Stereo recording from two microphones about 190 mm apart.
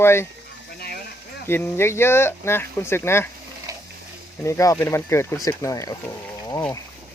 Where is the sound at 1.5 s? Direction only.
10° left (ahead or behind).